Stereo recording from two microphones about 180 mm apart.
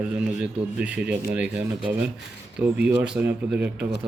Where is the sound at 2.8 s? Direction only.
5° right (ahead or behind).